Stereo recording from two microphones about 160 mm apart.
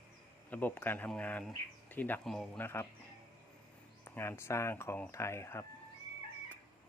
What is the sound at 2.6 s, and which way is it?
Speech, 15° left (ahead or behind).